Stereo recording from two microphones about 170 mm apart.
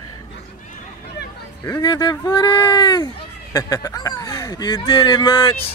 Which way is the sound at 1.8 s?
25° left (ahead or behind).